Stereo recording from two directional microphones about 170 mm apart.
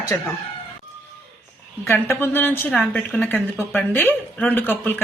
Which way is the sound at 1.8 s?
15° left (ahead or behind).